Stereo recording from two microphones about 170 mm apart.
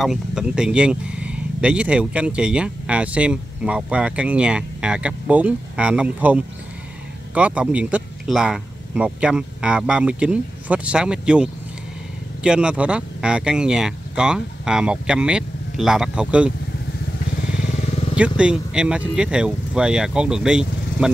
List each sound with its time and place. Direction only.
0.0 s speech: 5° right (ahead or behind)
17.4 s motorcycle: 40° left (ahead or behind)
18.4 s speech: 5° right (ahead or behind)